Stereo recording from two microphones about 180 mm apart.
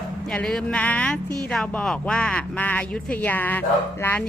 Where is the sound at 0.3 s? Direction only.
5° left (ahead or behind).